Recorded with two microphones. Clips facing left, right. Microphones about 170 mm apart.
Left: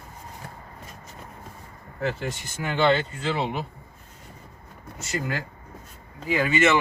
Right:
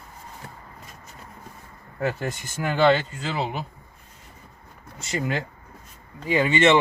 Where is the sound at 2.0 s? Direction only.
45° right (ahead or behind).